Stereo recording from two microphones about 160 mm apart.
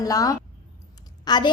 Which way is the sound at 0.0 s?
20° left (ahead or behind).